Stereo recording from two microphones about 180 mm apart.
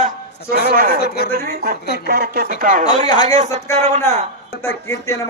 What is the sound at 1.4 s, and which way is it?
Speech, 60° right (ahead or behind).